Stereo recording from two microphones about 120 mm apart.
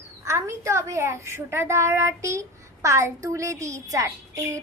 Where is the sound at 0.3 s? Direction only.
25° right (ahead or behind).